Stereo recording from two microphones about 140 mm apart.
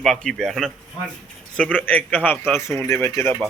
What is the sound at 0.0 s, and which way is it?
Speech, 5° left (ahead or behind).